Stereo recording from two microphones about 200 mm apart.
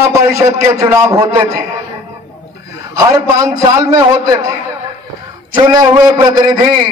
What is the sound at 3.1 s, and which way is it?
A man's voice, 15° right (ahead or behind).